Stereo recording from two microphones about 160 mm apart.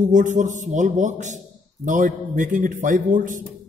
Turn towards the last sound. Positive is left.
turn(degrees=-55)  # may be behind; listen again after turning